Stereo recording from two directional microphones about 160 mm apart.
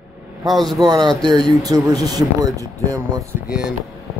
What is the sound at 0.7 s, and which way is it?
Speech, 25° right (ahead or behind).